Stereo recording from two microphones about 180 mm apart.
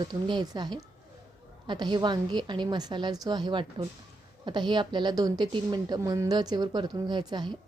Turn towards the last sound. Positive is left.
turn(degrees=-25)  # may be behind; listen again after turning